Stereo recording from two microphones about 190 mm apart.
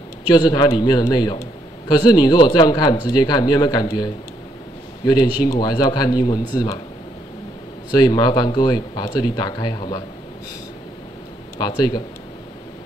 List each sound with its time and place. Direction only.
0.3 s a man's voice: 20° left (ahead or behind)
7.9 s a man's voice: 20° left (ahead or behind)
11.5 s a man's voice: 20° left (ahead or behind)